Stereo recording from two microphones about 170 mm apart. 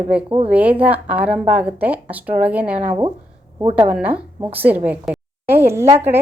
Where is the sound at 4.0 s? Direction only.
10° right (ahead or behind).